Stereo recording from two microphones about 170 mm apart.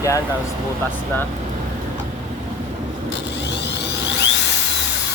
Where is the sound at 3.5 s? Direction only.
90° left.